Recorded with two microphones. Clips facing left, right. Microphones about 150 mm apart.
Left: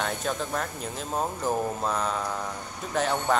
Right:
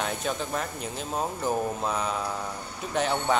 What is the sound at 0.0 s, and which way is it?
Speech, centre (ahead or behind).